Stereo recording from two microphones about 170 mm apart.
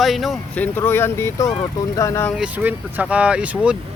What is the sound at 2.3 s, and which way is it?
Speech, 5° right (ahead or behind).